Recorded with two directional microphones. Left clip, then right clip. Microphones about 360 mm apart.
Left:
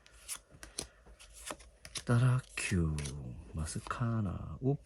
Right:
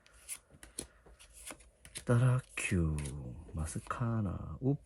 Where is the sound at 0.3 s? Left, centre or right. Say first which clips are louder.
Left 4 dB; centre.